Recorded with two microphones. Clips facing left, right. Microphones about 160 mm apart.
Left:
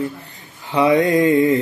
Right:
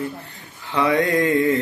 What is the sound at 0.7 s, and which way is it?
Mantra, 20° left (ahead or behind).